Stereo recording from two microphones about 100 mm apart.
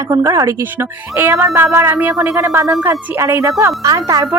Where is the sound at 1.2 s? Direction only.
20° right (ahead or behind).